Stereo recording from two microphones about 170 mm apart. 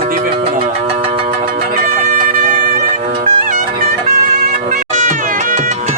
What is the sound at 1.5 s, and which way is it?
Music, 55° right (ahead or behind).